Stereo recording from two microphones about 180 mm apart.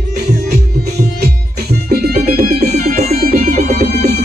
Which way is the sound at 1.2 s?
60° right (ahead or behind).